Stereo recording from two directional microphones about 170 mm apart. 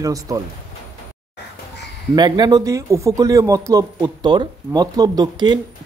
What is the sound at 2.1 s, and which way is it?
Speech, 25° right (ahead or behind).